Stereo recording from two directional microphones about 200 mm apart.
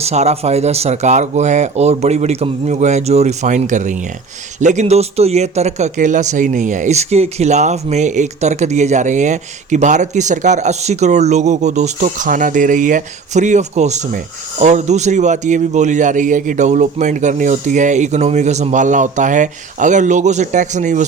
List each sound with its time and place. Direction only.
0.0 s speech: 35° right (ahead or behind)